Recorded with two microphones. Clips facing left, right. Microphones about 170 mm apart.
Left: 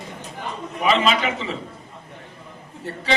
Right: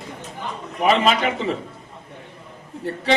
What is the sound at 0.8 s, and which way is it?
Speech, 50° right (ahead or behind).